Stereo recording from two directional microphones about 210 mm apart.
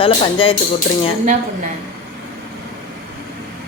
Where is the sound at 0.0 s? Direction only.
25° left (ahead or behind).